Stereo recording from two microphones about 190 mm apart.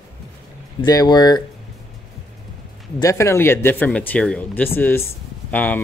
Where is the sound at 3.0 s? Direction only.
15° left (ahead or behind).